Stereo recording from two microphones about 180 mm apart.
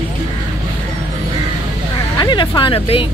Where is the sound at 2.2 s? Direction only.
25° left (ahead or behind).